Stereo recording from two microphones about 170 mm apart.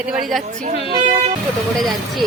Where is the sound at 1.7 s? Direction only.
Centre (ahead or behind).